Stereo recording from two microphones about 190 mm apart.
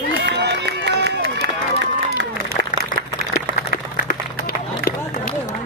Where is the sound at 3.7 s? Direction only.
65° right (ahead or behind).